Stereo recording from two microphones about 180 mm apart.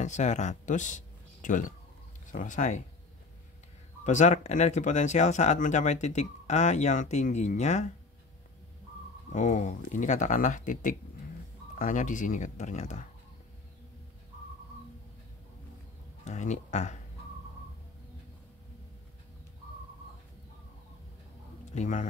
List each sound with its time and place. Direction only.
0.0 s speech: 40° left (ahead or behind)
4.0 s speech: 40° left (ahead or behind)
9.3 s speech: 40° left (ahead or behind)
16.3 s speech: 40° left (ahead or behind)
21.7 s speech: 40° left (ahead or behind)